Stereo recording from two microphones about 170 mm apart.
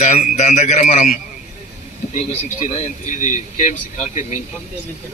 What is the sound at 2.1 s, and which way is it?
A man's voice, 45° left (ahead or behind).